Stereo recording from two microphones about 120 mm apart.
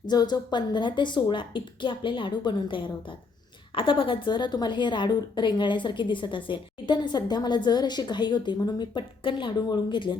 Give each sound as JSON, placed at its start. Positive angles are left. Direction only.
{"t": 0.0, "sound": "a woman's voice", "side_deg": 35}